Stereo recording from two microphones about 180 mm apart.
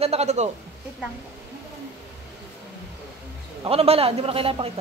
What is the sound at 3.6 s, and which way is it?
A woman's voice, 35° right (ahead or behind).